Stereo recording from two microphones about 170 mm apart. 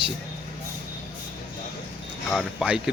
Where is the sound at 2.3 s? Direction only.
Centre (ahead or behind).